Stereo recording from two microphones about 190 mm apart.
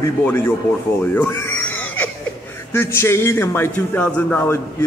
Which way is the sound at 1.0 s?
10° left (ahead or behind).